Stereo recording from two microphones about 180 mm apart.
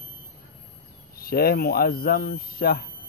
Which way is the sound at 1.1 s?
55° left (ahead or behind).